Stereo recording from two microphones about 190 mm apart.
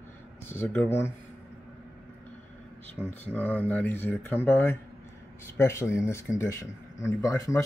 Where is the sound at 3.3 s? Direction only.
10° left (ahead or behind).